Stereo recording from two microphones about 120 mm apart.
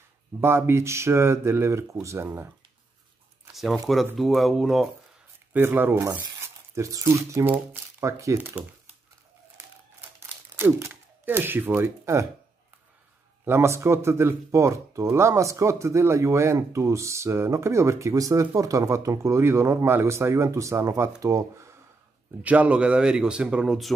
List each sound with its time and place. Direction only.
0.4 s speech: 20° right (ahead or behind)
3.5 s speech: centre (ahead or behind)
5.5 s speech: 20° right (ahead or behind)
10.5 s speech: 20° right (ahead or behind)
13.5 s speech: 20° right (ahead or behind)
22.4 s speech: 10° right (ahead or behind)